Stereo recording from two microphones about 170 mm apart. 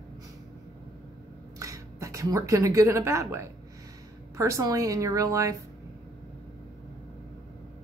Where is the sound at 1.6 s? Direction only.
20° right (ahead or behind).